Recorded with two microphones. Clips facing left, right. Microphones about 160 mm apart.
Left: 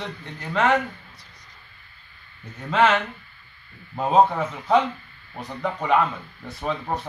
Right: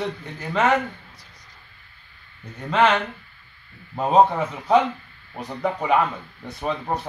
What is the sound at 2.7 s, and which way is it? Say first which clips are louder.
Speech: even; centre (ahead or behind).